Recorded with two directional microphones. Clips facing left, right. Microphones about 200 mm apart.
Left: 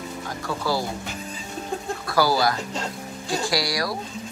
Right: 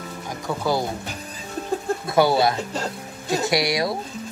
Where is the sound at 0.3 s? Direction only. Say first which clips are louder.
Right 3 dB; 20° right (ahead or behind).